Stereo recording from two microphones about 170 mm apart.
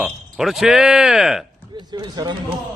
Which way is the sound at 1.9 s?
25° right (ahead or behind).